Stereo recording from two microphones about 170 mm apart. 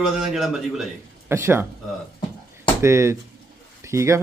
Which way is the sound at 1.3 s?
15° right (ahead or behind).